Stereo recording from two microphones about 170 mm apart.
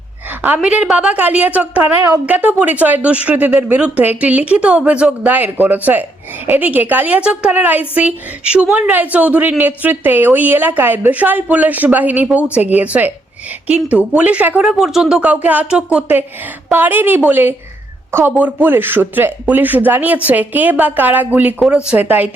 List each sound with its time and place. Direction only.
0.4 s speech: 10° right (ahead or behind)